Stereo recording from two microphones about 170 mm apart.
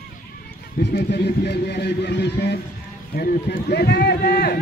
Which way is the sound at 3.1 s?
65° left (ahead or behind).